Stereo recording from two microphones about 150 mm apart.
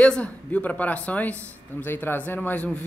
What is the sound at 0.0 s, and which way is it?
A man's voice, 10° left (ahead or behind).